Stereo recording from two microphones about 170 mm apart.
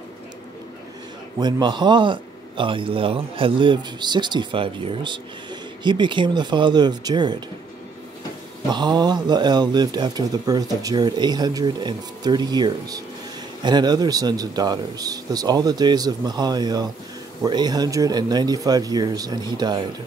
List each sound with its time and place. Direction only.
1.4 s speech: 25° right (ahead or behind)
8.6 s speech: 25° right (ahead or behind)